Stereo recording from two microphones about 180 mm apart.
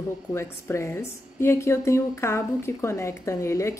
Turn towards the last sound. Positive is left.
turn(degrees=15)  # may be behind; listen again after turning